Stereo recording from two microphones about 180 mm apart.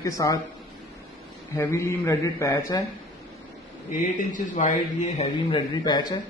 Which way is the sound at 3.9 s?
45° left (ahead or behind).